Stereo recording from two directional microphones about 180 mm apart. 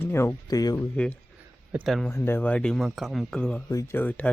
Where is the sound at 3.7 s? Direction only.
15° left (ahead or behind).